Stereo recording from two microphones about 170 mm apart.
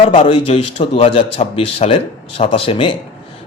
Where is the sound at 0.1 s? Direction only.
35° left (ahead or behind).